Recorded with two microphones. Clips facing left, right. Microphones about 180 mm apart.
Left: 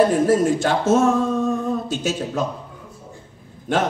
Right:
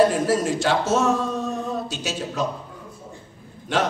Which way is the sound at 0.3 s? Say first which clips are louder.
Left 3 dB; 50° left (ahead or behind).